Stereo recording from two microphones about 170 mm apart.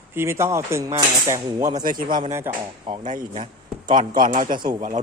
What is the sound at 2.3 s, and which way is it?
Speech, 15° right (ahead or behind).